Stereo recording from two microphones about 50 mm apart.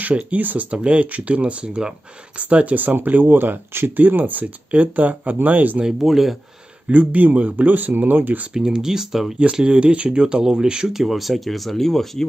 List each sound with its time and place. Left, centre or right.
0.0 s speech: right
2.3 s speech: right
5.9 s speech: centre
6.9 s speech: right
8.5 s speech: centre
9.4 s speech: right; by 12.3 s centre